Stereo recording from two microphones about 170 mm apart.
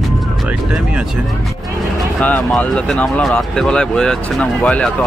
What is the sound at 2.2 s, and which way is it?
Speech, 10° left (ahead or behind).